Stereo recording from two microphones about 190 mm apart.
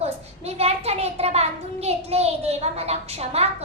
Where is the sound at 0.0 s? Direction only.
35° right (ahead or behind).